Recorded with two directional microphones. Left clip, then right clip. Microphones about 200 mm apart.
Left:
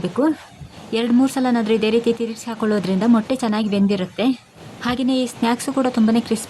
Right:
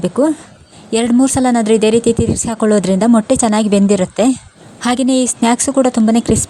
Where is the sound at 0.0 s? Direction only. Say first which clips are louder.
Right 6 dB; 35° right (ahead or behind).